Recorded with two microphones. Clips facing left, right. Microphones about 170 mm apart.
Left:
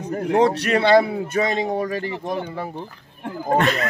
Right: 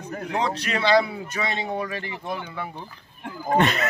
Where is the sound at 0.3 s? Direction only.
60° left (ahead or behind); by 2.7 s 40° left (ahead or behind).